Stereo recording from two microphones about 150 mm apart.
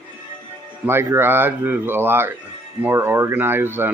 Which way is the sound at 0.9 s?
15° right (ahead or behind).